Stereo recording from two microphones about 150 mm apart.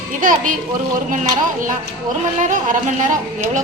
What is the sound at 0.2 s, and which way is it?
A woman's voice, 60° right (ahead or behind).